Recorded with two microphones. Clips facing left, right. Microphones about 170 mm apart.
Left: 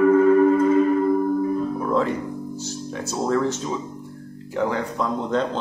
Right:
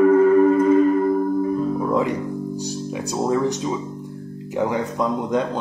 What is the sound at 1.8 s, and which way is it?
Music, 15° right (ahead or behind).